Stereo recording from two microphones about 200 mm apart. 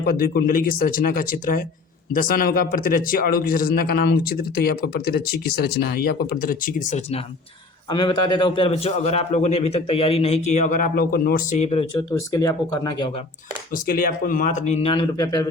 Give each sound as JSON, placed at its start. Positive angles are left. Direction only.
{"t": 0.0, "sound": "speech", "side_deg": 45}
{"t": 7.9, "sound": "a man's voice", "side_deg": 20}
{"t": 11.9, "sound": "speech", "side_deg": 15}
{"t": 13.7, "sound": "a man's voice", "side_deg": 45}